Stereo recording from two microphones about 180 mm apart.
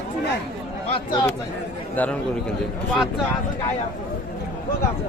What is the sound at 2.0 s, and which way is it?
Speech, 10° left (ahead or behind).